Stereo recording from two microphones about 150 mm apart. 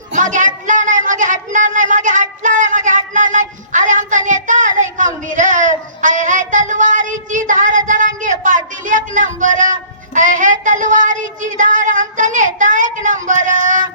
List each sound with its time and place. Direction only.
0.1 s speech: 55° right (ahead or behind)